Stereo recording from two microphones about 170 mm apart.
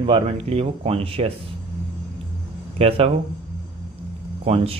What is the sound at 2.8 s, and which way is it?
Speech, 35° right (ahead or behind).